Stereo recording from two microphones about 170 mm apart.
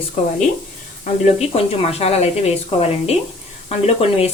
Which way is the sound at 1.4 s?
35° left (ahead or behind).